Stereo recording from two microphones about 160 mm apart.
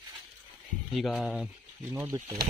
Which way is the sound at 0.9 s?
Centre (ahead or behind).